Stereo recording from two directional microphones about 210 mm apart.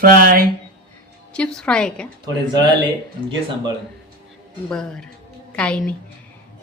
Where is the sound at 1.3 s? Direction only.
5° left (ahead or behind).